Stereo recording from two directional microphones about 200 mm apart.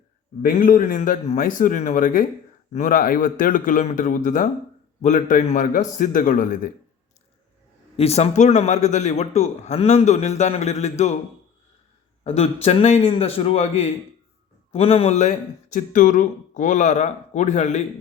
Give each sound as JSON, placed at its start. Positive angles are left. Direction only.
{"t": 0.4, "sound": "speech", "side_deg": 45}
{"t": 7.9, "sound": "speech", "side_deg": 30}
{"t": 12.2, "sound": "speech", "side_deg": 30}